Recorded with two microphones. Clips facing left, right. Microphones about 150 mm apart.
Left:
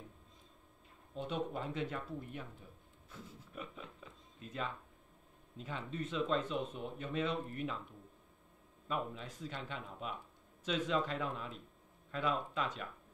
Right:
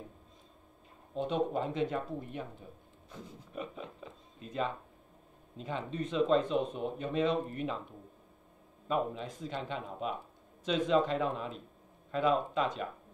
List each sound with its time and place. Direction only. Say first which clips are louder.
1.1 s speech: right 7 dB; 30° right (ahead or behind)